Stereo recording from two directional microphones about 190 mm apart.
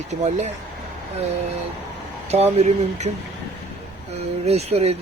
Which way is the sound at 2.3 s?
35° right (ahead or behind).